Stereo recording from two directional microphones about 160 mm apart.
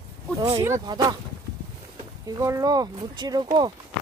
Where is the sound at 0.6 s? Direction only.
20° right (ahead or behind).